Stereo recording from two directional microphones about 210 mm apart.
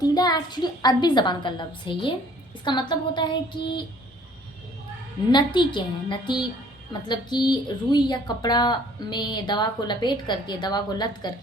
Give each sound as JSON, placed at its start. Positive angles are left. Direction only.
{"t": 0.0, "sound": "a woman's voice", "side_deg": 20}
{"t": 5.3, "sound": "a woman's voice", "side_deg": 20}